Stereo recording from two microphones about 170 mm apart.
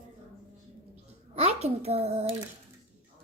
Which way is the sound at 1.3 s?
40° right (ahead or behind).